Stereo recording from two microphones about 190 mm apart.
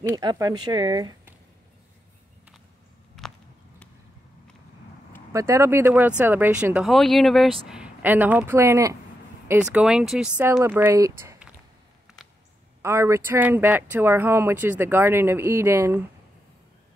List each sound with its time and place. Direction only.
0.1 s speech: 20° right (ahead or behind)
3.2 s walk: centre (ahead or behind)
5.3 s speech: 15° right (ahead or behind)
9.5 s speech: 5° right (ahead or behind)
12.1 s a sound: 5° right (ahead or behind)
12.8 s speech: 15° right (ahead or behind)